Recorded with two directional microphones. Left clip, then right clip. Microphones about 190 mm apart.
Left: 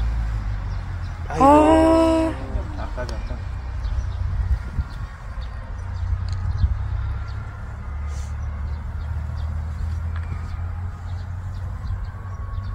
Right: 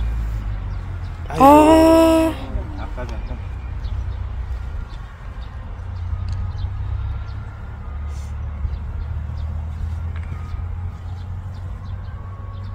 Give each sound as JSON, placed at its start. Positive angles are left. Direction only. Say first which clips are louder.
{"t": 1.3, "sound": "music", "louder": "right 3 dB", "side_deg": -40}